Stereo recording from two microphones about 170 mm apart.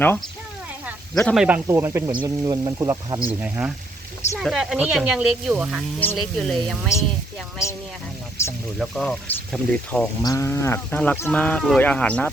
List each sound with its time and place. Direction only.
1.1 s speech: 5° left (ahead or behind)
1.5 s speech: 10° right (ahead or behind)
6.0 s speech: 5° left (ahead or behind)
6.9 s speech: 15° left (ahead or behind)
8.4 s speech: 15° left (ahead or behind)
8.8 s speech: 5° left (ahead or behind)
10.2 s speech: 20° left (ahead or behind)